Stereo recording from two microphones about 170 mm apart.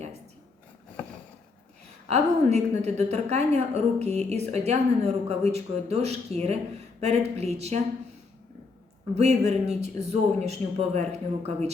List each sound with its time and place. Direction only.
2.0 s a woman's voice: 40° right (ahead or behind)
9.1 s a woman's voice: 40° right (ahead or behind)